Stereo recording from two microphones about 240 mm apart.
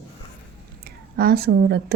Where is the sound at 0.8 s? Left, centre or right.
Right.